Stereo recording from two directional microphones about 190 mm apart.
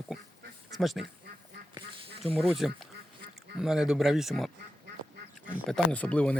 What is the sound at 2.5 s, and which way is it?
Speech, centre (ahead or behind).